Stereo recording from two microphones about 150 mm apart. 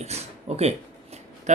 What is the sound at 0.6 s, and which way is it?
Shuffling cards, 45° right (ahead or behind).